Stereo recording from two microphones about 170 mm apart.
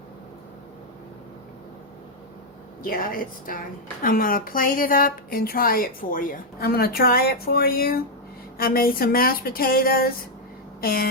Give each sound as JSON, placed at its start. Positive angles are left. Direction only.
{"t": 2.8, "sound": "a woman's voice", "side_deg": 55}